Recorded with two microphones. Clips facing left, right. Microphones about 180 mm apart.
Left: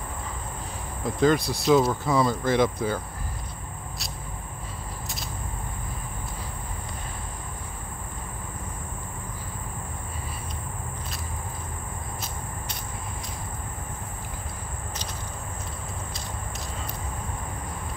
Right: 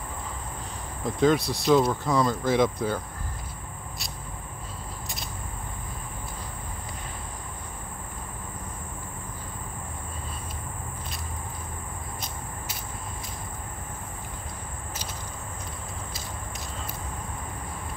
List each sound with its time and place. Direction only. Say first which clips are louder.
1.0 s speech: even; centre (ahead or behind)